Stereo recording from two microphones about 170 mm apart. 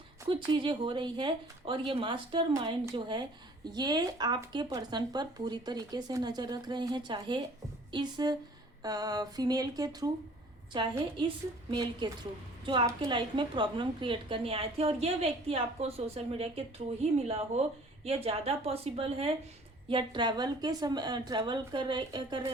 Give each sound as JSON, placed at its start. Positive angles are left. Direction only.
{"t": 0.3, "sound": "speech", "side_deg": -30}
{"t": 2.5, "sound": "a woman's voice", "side_deg": -20}